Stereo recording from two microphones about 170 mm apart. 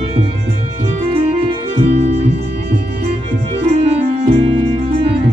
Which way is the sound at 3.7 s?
40° right (ahead or behind).